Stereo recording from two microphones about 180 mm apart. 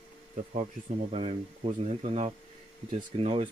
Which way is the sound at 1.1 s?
35° right (ahead or behind).